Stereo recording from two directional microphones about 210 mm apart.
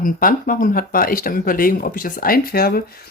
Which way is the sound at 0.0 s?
40° left (ahead or behind).